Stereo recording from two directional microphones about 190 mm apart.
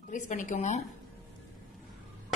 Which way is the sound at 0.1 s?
40° left (ahead or behind).